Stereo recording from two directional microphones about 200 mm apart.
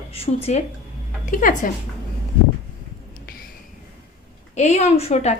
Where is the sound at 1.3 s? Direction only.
40° left (ahead or behind).